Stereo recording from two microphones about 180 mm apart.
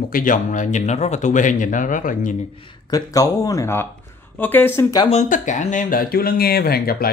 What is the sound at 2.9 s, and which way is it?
Speech, 20° left (ahead or behind).